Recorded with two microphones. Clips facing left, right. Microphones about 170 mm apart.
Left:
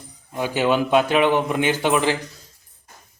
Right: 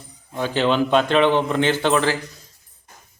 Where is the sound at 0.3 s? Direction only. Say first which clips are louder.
Even; 10° left (ahead or behind).